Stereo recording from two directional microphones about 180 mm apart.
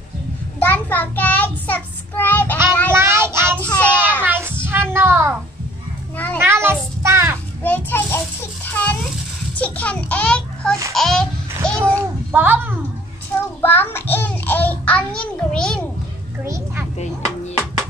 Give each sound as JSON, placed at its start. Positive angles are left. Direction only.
{"t": 0.6, "sound": "child singing", "side_deg": 10}
{"t": 2.9, "sound": "child singing", "side_deg": -15}
{"t": 3.6, "sound": "child singing", "side_deg": 5}
{"t": 4.2, "sound": "child singing", "side_deg": -10}
{"t": 6.4, "sound": "child singing", "side_deg": -15}
{"t": 7.6, "sound": "a sound", "side_deg": 10}
{"t": 10.9, "sound": "a child's voice", "side_deg": 0}
{"t": 11.6, "sound": "a sound", "side_deg": 5}
{"t": 12.3, "sound": "speech", "side_deg": -10}
{"t": 13.6, "sound": "a child's voice", "side_deg": 10}
{"t": 16.4, "sound": "a child's voice", "side_deg": -15}